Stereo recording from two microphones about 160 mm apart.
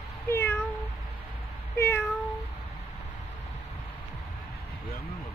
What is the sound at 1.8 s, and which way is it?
Cat, 15° left (ahead or behind).